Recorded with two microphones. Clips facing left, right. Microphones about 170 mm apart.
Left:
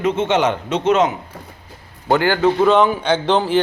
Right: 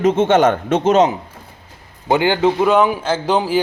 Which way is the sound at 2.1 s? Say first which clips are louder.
Right 1 dB; 15° right (ahead or behind).